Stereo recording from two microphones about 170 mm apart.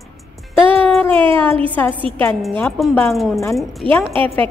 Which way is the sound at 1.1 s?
30° right (ahead or behind).